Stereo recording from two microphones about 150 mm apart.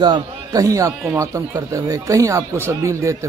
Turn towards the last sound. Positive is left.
turn(degrees=-20)  # may be behind; listen again after turning